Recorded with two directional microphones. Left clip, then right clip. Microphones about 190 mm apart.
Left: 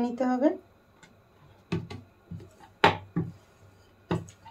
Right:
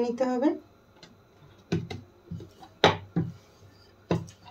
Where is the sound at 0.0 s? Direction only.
20° left (ahead or behind).